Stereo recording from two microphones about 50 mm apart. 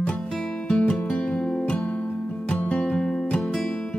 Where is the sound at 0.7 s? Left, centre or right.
Left.